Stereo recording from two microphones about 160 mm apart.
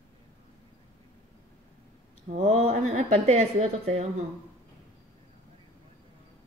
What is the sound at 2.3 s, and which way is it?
A woman's voice, 40° right (ahead or behind).